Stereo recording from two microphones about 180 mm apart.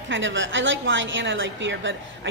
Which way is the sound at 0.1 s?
90° right.